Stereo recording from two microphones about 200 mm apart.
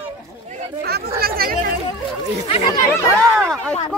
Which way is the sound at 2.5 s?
20° left (ahead or behind).